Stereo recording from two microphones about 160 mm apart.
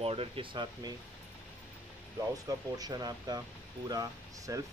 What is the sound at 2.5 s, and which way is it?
Speech, 25° right (ahead or behind).